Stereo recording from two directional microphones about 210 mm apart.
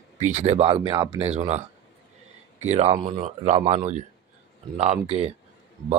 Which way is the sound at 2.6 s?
30° right (ahead or behind).